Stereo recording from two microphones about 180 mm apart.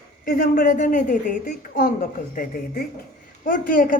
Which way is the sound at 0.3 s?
50° left (ahead or behind).